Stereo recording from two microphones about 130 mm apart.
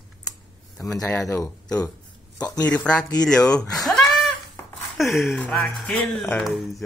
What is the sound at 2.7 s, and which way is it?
Speech, 5° left (ahead or behind).